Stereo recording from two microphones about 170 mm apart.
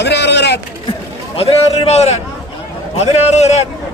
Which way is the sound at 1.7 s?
35° left (ahead or behind).